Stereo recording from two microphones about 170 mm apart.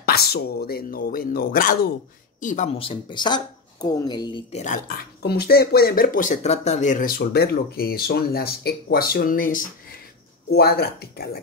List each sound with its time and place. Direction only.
0.0 s speech: 70° left (ahead or behind)
2.4 s speech: 45° left (ahead or behind); by 4.4 s 25° left (ahead or behind)
4.5 s speech: 45° left (ahead or behind)
5.2 s speech: 70° left (ahead or behind)
10.5 s speech: 65° left (ahead or behind)